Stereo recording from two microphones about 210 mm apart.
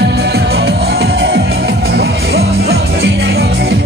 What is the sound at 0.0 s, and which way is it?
Music, 50° right (ahead or behind).